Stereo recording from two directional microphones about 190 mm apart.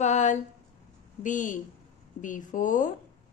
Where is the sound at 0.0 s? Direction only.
40° left (ahead or behind).